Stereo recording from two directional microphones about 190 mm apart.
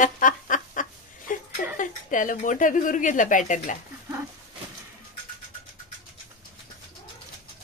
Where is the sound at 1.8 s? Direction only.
45° left (ahead or behind).